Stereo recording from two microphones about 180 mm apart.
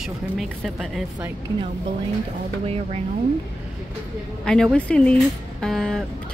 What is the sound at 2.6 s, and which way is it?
Speech, 35° right (ahead or behind).